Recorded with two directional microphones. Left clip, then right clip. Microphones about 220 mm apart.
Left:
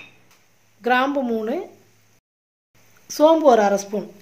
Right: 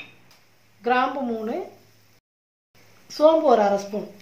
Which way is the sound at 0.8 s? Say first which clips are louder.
Left 3 dB; 50° left (ahead or behind).